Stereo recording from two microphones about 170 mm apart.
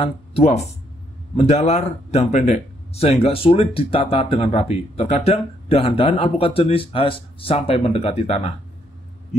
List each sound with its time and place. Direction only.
0.0 s speech: 35° left (ahead or behind)